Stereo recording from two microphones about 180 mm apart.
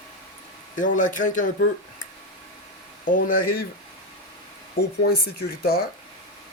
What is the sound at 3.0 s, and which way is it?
Speech, 50° left (ahead or behind).